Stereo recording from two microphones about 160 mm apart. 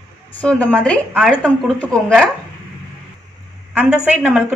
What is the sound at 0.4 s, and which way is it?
A woman's voice, 5° left (ahead or behind).